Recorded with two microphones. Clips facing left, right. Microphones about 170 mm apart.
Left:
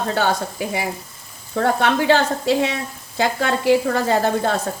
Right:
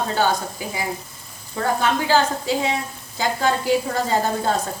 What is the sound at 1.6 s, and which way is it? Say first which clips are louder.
A woman's voice: left 4 dB; 65° left (ahead or behind).